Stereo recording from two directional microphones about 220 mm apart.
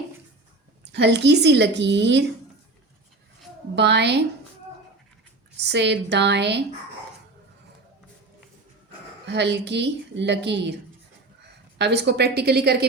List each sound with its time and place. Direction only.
0.9 s a woman's voice: 50° right (ahead or behind)
3.8 s a woman's voice: 50° right (ahead or behind)
5.6 s a woman's voice: 50° right (ahead or behind)
9.2 s a woman's voice: 50° right (ahead or behind)
11.8 s a woman's voice: 50° right (ahead or behind)